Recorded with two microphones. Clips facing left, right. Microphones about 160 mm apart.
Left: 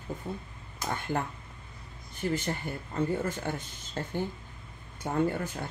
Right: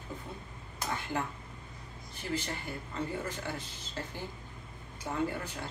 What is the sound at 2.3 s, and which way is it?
Speech, 50° left (ahead or behind).